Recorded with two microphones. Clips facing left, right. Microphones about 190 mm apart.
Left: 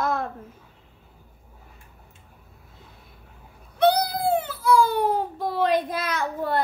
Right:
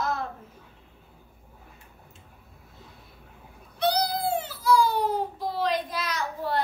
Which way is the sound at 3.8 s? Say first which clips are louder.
Left 5 dB; 55° left (ahead or behind).